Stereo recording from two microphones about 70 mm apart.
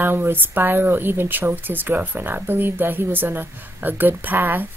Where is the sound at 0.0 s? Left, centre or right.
Right.